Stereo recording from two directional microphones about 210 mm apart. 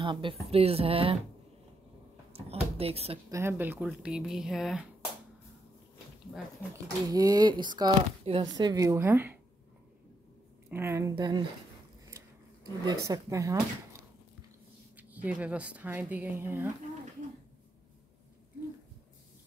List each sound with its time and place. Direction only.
0.0 s speech: 25° right (ahead or behind)
2.3 s speech: 30° right (ahead or behind)
3.3 s speech: 15° right (ahead or behind)
6.7 s speech: 20° right (ahead or behind)
10.7 s speech: 10° right (ahead or behind)
12.8 s speech: 15° right (ahead or behind)
15.0 s speech: 5° right (ahead or behind)